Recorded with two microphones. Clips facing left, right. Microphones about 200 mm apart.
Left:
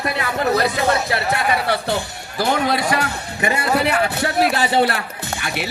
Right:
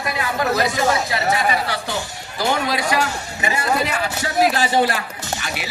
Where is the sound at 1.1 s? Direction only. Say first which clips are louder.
Even; 60° left (ahead or behind).